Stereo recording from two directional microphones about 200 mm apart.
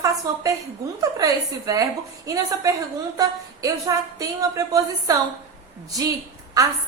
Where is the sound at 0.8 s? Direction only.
15° right (ahead or behind).